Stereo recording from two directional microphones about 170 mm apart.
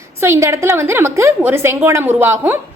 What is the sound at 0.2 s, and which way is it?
A woman's voice, 15° right (ahead or behind).